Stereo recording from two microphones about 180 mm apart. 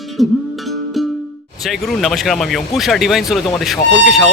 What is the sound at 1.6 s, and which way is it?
Speech, centre (ahead or behind).